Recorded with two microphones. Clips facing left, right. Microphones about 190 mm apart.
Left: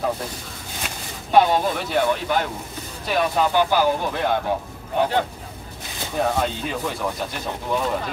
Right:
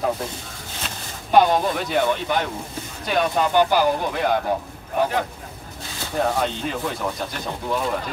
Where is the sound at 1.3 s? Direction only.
Centre (ahead or behind).